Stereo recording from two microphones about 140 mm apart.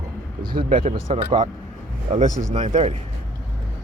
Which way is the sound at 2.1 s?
50° right (ahead or behind).